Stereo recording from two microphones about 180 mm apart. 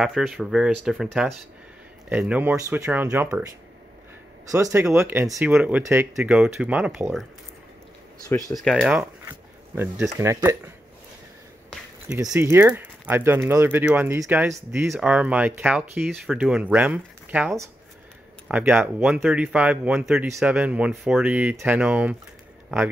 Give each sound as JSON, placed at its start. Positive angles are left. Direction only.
{"t": 0.0, "sound": "speech", "side_deg": 0}
{"t": 4.5, "sound": "speech", "side_deg": -15}
{"t": 8.5, "sound": "speech", "side_deg": 0}
{"t": 12.3, "sound": "speech", "side_deg": -10}